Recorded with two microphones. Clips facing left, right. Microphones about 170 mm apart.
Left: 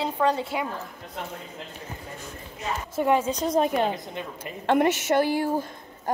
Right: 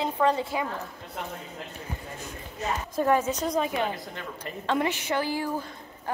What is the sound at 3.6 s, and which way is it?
Speech, 50° left (ahead or behind).